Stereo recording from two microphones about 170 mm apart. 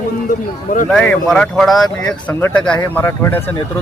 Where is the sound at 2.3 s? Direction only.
10° left (ahead or behind).